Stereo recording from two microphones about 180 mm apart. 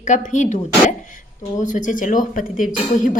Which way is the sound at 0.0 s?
45° left (ahead or behind).